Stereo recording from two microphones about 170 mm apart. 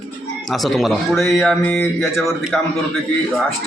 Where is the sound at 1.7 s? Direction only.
10° left (ahead or behind).